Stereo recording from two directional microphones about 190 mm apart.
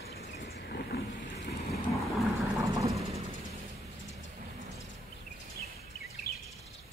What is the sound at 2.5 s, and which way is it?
Vehicle, 15° right (ahead or behind).